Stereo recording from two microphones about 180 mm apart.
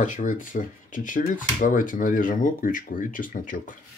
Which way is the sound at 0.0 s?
45° left (ahead or behind).